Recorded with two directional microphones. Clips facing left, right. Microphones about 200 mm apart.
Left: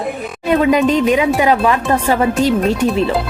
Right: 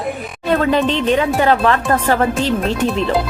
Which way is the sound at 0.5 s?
10° left (ahead or behind).